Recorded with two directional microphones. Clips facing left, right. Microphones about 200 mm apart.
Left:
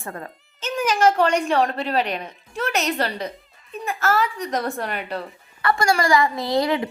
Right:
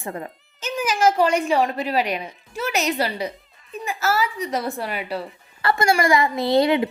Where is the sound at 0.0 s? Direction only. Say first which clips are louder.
Right 3 dB; 20° right (ahead or behind).